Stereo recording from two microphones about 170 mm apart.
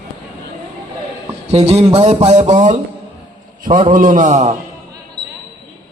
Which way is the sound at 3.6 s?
50° right (ahead or behind).